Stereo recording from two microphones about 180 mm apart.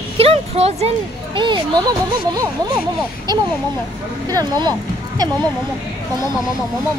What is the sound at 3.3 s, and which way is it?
A child's voice, 20° right (ahead or behind).